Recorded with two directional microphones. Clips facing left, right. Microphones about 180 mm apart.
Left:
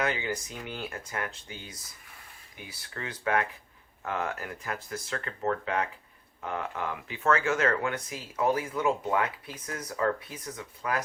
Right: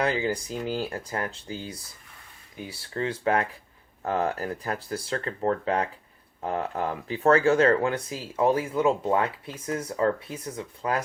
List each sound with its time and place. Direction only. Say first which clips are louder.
0.0 s speech: right 5 dB; 35° right (ahead or behind)